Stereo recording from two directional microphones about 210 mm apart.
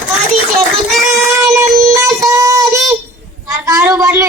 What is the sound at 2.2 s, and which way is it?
Child singing, 15° right (ahead or behind).